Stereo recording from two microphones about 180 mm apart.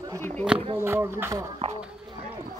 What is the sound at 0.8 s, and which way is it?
Speech, 15° right (ahead or behind).